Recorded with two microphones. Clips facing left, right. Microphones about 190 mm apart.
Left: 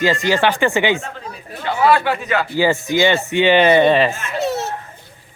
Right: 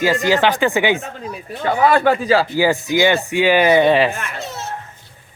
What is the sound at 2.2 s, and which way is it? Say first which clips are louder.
Speech: right 5 dB; 30° right (ahead or behind).